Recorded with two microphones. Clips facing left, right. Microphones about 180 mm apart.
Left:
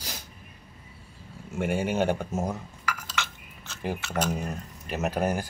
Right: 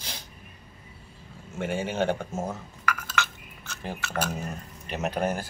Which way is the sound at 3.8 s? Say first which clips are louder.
Left 2 dB; 10° left (ahead or behind).